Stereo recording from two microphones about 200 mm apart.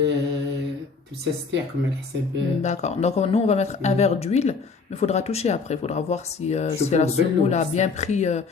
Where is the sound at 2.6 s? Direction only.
35° left (ahead or behind).